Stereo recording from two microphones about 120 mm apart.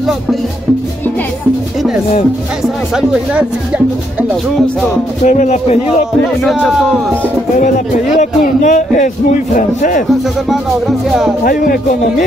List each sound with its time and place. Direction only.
2.6 s speech: 5° right (ahead or behind)
5.2 s a man's voice: 90° left; by 6.0 s 70° left (ahead or behind)
6.4 s a man's voice: 5° right (ahead or behind)
7.5 s a man's voice: 90° left
11.1 s a man's voice: centre (ahead or behind)